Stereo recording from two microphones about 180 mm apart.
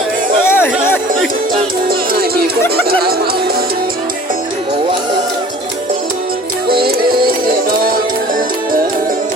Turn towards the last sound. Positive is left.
turn(degrees=-55)  # may be behind; listen again after turning